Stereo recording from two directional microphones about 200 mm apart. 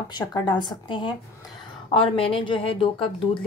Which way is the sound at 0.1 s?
20° left (ahead or behind).